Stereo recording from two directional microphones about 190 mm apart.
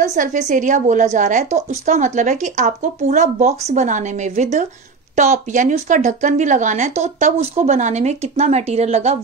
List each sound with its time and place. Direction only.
0.0 s a woman's voice: 40° right (ahead or behind)